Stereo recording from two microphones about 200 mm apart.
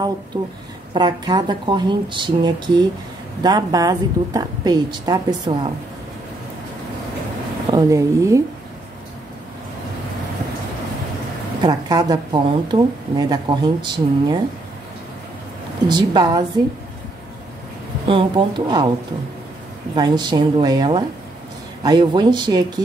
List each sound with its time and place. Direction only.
0.3 s speech: 25° right (ahead or behind)
7.7 s speech: 15° right (ahead or behind)
11.6 s speech: 20° right (ahead or behind)
15.9 s speech: 20° right (ahead or behind)
18.0 s speech: 25° right (ahead or behind)
20.0 s speech: 20° right (ahead or behind)